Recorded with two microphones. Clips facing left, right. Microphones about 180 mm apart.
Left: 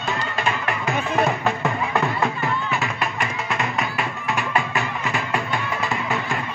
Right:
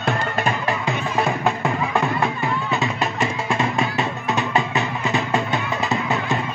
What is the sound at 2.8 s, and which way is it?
Music, 25° right (ahead or behind).